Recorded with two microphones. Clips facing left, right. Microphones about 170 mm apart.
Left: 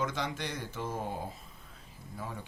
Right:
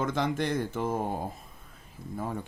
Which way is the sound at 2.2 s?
50° right (ahead or behind).